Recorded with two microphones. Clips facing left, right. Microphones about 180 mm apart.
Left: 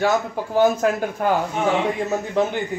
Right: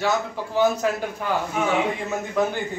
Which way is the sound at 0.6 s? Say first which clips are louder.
Left 3 dB; 45° left (ahead or behind).